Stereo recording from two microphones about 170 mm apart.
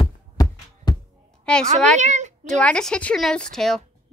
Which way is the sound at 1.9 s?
45° right (ahead or behind).